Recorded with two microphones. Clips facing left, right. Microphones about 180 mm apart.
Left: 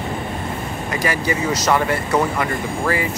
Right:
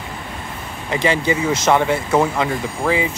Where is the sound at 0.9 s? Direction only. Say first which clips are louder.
Right 4 dB; 25° right (ahead or behind).